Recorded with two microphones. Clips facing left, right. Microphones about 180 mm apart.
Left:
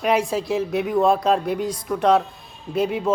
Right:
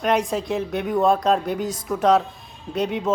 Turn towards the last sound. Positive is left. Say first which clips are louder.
# left 2 dB
turn(degrees=0)  # may be behind; listen again after turning